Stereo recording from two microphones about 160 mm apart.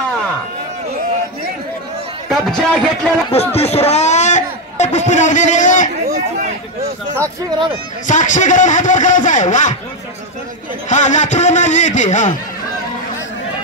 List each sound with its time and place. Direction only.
2.2 s speech: 5° left (ahead or behind)
3.3 s speech: 40° left (ahead or behind)
8.1 s a man's voice: 50° left (ahead or behind)
10.9 s a man's voice: 50° left (ahead or behind)